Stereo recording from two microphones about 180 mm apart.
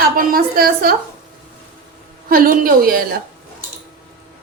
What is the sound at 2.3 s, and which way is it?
Speech, 55° right (ahead or behind).